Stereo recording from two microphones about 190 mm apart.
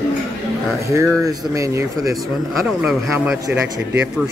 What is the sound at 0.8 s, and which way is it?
Speech, 15° right (ahead or behind).